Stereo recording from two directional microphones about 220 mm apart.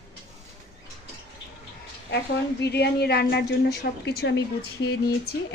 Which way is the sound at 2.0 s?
50° left (ahead or behind).